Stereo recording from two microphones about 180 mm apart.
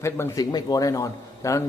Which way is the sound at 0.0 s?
20° left (ahead or behind).